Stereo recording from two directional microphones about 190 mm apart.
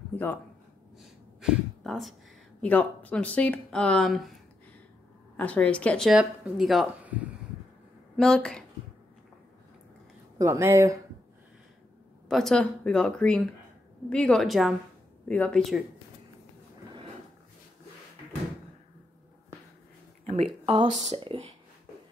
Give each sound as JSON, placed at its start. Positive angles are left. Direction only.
{"t": 0.1, "sound": "a man's voice", "side_deg": 10}
{"t": 0.9, "sound": "a sound", "side_deg": -5}
{"t": 2.6, "sound": "speech", "side_deg": 10}
{"t": 5.4, "sound": "speech", "side_deg": 5}
{"t": 10.4, "sound": "speech", "side_deg": -15}
{"t": 12.3, "sound": "speech", "side_deg": 0}
{"t": 20.6, "sound": "speech", "side_deg": -25}